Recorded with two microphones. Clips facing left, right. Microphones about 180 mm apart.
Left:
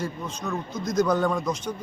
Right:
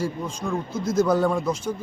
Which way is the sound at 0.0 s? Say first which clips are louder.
Right 3 dB; 10° right (ahead or behind).